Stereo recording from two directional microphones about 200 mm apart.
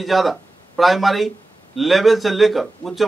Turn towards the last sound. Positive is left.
turn(degrees=0)  # may be behind; listen again after turning